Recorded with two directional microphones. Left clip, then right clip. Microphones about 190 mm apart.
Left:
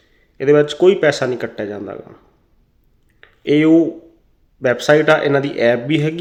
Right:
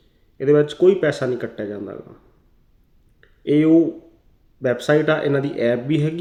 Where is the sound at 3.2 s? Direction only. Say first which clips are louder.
Left 3 dB; 15° right (ahead or behind).